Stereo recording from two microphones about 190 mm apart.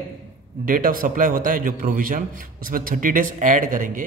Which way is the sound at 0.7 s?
45° right (ahead or behind).